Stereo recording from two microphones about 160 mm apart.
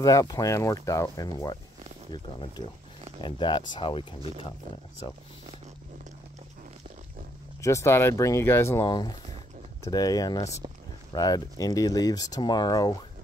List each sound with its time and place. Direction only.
0.0 s speech: 20° left (ahead or behind)
7.6 s speech: 20° left (ahead or behind)
8.8 s speech: 30° left (ahead or behind)